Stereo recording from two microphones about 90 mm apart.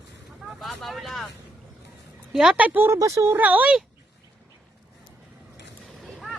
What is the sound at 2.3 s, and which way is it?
Speech, 5° right (ahead or behind).